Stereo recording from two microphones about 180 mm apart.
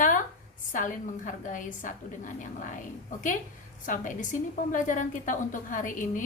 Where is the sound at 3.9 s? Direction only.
45° left (ahead or behind).